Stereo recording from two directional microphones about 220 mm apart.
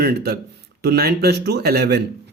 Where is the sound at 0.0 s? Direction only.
45° right (ahead or behind).